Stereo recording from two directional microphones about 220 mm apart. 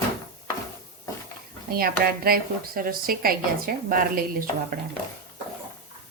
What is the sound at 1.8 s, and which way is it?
A woman's voice, 45° right (ahead or behind).